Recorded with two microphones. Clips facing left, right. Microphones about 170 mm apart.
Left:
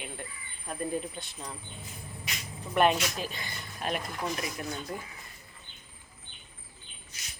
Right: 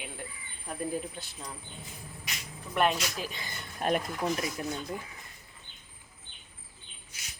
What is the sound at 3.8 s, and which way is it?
Speech, 45° right (ahead or behind).